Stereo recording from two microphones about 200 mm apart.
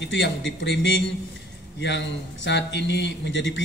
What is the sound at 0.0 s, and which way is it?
Speech, 65° left (ahead or behind).